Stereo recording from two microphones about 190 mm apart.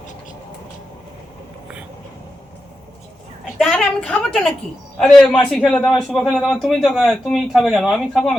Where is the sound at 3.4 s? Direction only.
Centre (ahead or behind).